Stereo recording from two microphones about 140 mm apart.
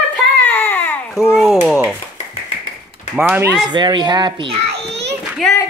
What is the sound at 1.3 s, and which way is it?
Speech, centre (ahead or behind).